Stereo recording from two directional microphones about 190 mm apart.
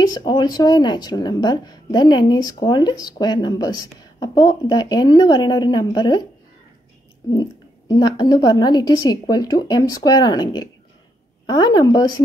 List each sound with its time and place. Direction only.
0.1 s speech: 20° left (ahead or behind)
7.9 s speech: 20° left (ahead or behind)